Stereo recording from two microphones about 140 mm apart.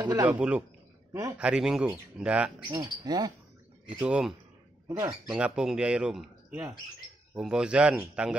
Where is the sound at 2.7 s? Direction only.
25° right (ahead or behind).